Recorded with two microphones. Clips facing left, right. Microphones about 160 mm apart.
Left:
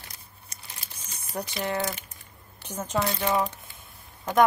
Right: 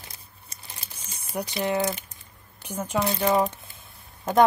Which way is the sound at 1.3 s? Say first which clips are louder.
Right 3 dB; 10° right (ahead or behind).